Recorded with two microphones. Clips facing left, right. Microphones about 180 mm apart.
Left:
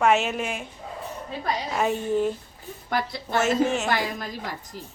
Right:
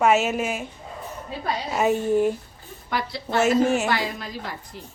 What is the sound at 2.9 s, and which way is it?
Speech, 50° left (ahead or behind).